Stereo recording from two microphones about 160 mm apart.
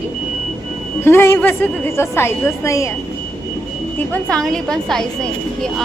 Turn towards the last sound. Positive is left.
turn(degrees=5)  # may be behind; listen again after turning